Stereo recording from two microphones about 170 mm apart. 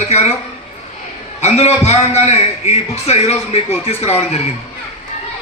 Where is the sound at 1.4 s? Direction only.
40° left (ahead or behind).